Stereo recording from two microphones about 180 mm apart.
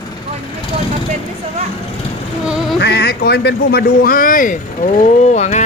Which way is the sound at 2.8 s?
65° left (ahead or behind).